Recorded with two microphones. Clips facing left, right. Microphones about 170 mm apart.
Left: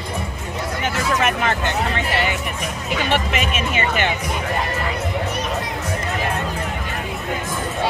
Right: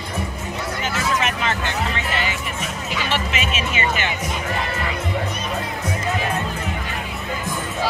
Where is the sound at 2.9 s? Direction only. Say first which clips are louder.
Left 4 dB; 55° left (ahead or behind).